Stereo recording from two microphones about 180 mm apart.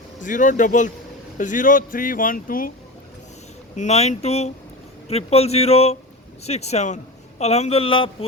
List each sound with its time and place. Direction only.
0.2 s speech: 45° left (ahead or behind)
3.8 s a man's voice: 40° left (ahead or behind)